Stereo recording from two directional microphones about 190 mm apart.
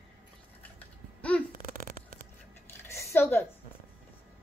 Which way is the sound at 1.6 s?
45° right (ahead or behind).